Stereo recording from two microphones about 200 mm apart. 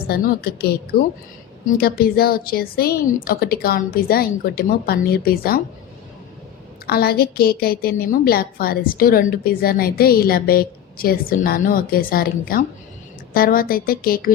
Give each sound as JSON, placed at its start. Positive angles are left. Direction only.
{"t": 0.1, "sound": "a woman's voice", "side_deg": 50}
{"t": 6.8, "sound": "a woman's voice", "side_deg": 50}